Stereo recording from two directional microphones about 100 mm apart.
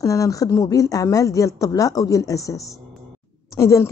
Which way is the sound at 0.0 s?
35° left (ahead or behind).